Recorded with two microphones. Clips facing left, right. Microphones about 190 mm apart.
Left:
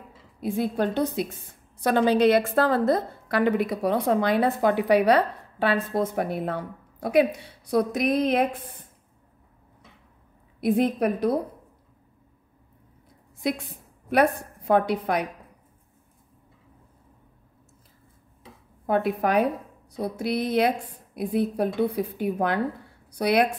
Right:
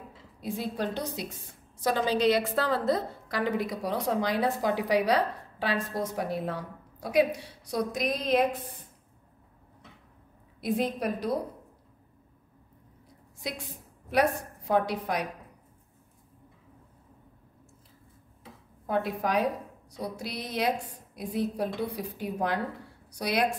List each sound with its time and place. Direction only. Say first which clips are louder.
0.4 s a woman's voice: left 7 dB; 55° left (ahead or behind)
10.6 s a woman's voice: left 7 dB; 55° left (ahead or behind)
14.7 s a woman's voice: left 5 dB; 60° left (ahead or behind)
18.9 s a woman's voice: left 5 dB; 60° left (ahead or behind)